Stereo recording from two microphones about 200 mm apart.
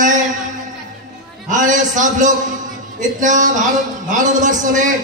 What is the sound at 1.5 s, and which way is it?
A man's voice, 40° right (ahead or behind).